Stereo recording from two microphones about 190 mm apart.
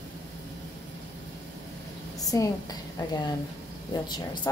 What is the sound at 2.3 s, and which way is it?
Speech, 15° left (ahead or behind).